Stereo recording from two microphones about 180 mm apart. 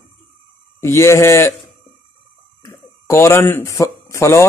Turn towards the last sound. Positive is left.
turn(degrees=15)  # may be behind; listen again after turning